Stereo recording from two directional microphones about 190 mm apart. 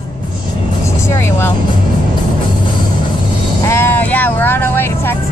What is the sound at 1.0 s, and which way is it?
Vehicle, 15° left (ahead or behind).